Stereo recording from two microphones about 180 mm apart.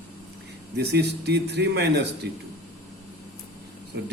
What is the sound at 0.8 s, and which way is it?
A man's voice, 65° right (ahead or behind).